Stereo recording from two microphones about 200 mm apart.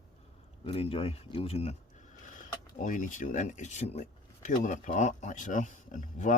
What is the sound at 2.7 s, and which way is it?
Speech, 40° left (ahead or behind).